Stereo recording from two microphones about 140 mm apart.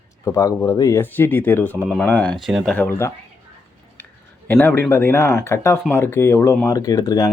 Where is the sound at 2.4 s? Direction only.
Centre (ahead or behind).